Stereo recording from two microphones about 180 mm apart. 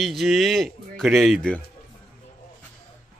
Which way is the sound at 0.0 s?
Centre (ahead or behind).